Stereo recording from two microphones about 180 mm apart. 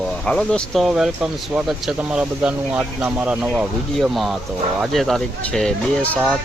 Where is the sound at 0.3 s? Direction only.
Centre (ahead or behind).